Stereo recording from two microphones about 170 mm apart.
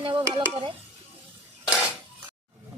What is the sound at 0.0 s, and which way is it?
Speech, 30° right (ahead or behind).